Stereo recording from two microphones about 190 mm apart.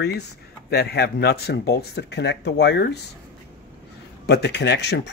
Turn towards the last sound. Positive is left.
turn(degrees=65)  # may be behind; listen again after turning